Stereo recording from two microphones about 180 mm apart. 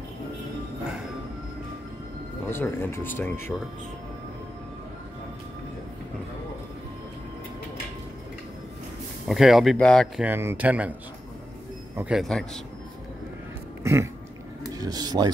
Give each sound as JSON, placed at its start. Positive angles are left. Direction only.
{"t": 2.5, "sound": "speech", "side_deg": 15}
{"t": 9.3, "sound": "speech", "side_deg": 0}
{"t": 10.2, "sound": "speech", "side_deg": -10}
{"t": 12.0, "sound": "speech", "side_deg": 0}
{"t": 14.7, "sound": "a sound", "side_deg": -20}